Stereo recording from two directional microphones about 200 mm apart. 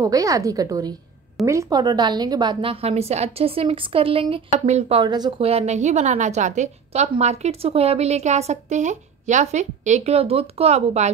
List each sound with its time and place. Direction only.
0.0 s a woman's voice: 15° right (ahead or behind); by 11.1 s 35° right (ahead or behind)